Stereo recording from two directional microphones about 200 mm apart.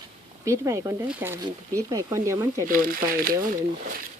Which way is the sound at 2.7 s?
45° right (ahead or behind).